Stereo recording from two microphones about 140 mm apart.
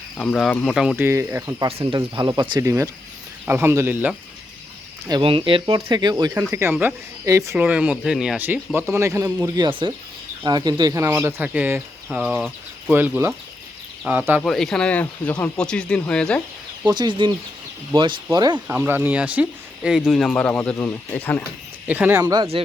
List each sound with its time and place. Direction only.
0.2 s speech: 5° left (ahead or behind)
0.9 s speech: 15° right (ahead or behind)
1.9 s speech: 35° right (ahead or behind)
2.6 s speech: 20° right (ahead or behind)
5.2 s speech: 40° right (ahead or behind)
6.5 s speech: 20° right (ahead or behind)
7.5 s speech: 10° right (ahead or behind); by 11.0 s 30° right (ahead or behind)
11.0 s speech: 15° right (ahead or behind)
14.4 s speech: 5° left (ahead or behind)
16.8 s speech: 30° right (ahead or behind)
18.7 s speech: 15° right (ahead or behind); by 21.4 s 15° left (ahead or behind)
21.8 s speech: 10° right (ahead or behind)
22.2 s speech: 25° right (ahead or behind)